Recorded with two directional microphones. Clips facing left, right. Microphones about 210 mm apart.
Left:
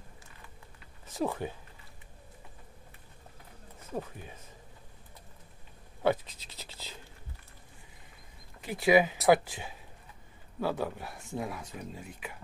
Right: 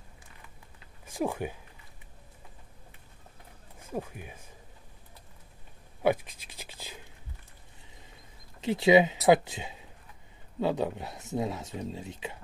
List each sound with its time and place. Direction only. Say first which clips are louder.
1.0 s speech: right 1 dB; 10° right (ahead or behind)
3.9 s speech: right 2 dB; 15° right (ahead or behind)
6.0 s scratch: right 2 dB; 15° right (ahead or behind)
8.5 s speech: right 3 dB; 25° right (ahead or behind)